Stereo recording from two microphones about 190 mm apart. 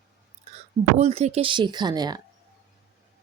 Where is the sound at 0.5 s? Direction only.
35° right (ahead or behind).